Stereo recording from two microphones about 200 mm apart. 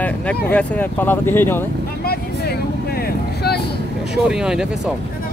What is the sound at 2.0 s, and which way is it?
Vehicle, 50° left (ahead or behind).